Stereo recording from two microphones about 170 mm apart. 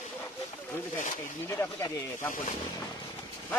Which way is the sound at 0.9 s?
50° left (ahead or behind).